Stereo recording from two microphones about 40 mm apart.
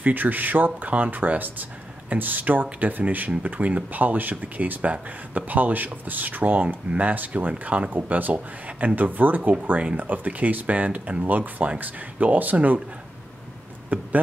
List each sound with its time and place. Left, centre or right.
0.0 s speech: right
13.9 s speech: right